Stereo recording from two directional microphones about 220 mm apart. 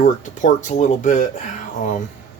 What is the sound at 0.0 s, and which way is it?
Speech, 35° left (ahead or behind).